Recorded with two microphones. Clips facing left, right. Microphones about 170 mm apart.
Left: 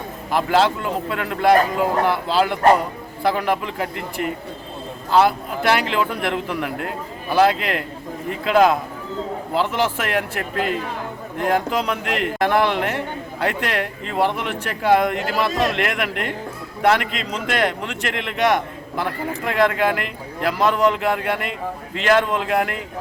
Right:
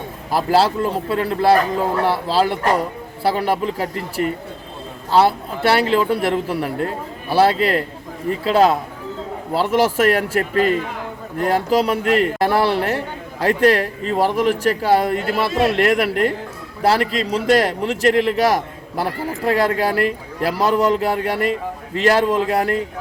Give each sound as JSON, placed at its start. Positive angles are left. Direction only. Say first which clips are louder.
{"t": 0.3, "sound": "a man's voice", "louder": "right 1 dB", "side_deg": -35}